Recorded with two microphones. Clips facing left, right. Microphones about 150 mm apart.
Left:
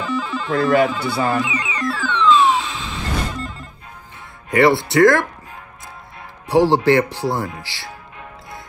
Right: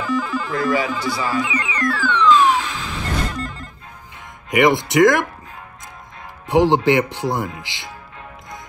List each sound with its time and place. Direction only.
0.0 s music: 20° left (ahead or behind)
0.7 s a man's voice: 60° left (ahead or behind)
1.4 s music: 20° left (ahead or behind)
4.5 s speech: 15° right (ahead or behind)
6.5 s speech: 20° right (ahead or behind)